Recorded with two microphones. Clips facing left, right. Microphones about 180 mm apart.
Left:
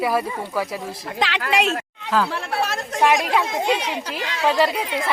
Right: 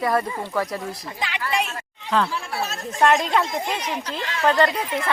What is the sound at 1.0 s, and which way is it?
Speech, 80° left.